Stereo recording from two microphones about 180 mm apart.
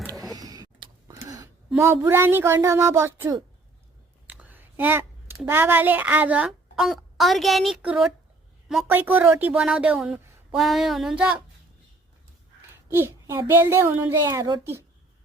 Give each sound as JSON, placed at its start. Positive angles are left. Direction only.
{"t": 0.3, "sound": "vehicle", "side_deg": -20}
{"t": 1.0, "sound": "a sound", "side_deg": -20}
{"t": 1.8, "sound": "speech", "side_deg": -15}
{"t": 4.3, "sound": "a sound", "side_deg": -10}
{"t": 5.4, "sound": "a woman's voice", "side_deg": -10}
{"t": 12.9, "sound": "speech", "side_deg": -15}